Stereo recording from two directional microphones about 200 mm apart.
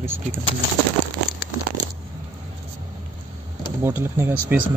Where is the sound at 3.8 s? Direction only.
10° right (ahead or behind).